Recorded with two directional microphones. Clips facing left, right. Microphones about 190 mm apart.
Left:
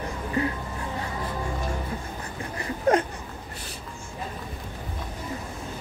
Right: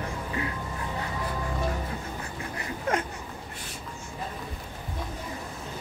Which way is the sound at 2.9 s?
35° left (ahead or behind).